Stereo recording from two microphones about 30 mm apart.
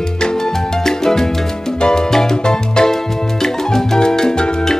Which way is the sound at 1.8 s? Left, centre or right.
Left.